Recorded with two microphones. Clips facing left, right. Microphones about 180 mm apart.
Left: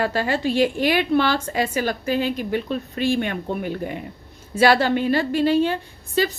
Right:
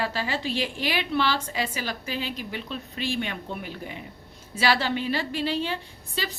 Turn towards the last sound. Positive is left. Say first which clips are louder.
# left 11 dB
turn(degrees=50)  # may be behind; listen again after turning